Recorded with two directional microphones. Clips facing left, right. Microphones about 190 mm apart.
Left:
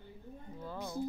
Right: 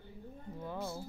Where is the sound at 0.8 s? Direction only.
15° left (ahead or behind).